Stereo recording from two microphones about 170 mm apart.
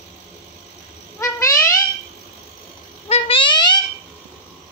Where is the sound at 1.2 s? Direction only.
15° left (ahead or behind).